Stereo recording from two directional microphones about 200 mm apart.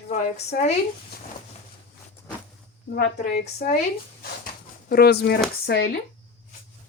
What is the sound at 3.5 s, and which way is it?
Speech, 50° left (ahead or behind).